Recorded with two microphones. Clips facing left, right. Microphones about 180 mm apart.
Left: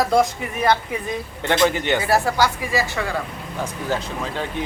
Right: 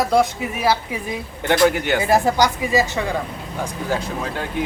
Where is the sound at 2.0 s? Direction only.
20° right (ahead or behind).